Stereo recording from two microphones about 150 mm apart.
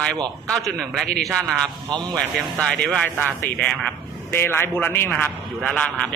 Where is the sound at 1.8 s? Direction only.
30° right (ahead or behind).